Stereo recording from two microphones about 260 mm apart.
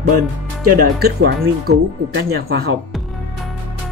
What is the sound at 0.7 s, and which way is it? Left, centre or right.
Speech, right.